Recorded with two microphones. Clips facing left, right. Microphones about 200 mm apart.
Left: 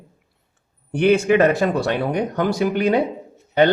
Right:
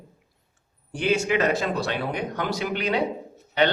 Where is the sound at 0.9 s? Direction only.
60° left (ahead or behind).